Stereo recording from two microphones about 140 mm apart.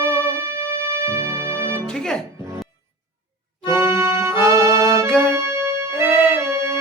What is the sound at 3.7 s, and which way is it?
Accordion, 15° right (ahead or behind).